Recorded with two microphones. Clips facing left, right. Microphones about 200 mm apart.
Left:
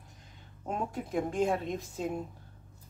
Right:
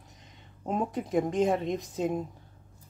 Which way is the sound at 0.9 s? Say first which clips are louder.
Right 5 dB; centre (ahead or behind).